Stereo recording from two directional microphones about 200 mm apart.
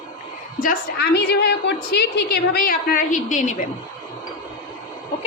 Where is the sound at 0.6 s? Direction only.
50° left (ahead or behind).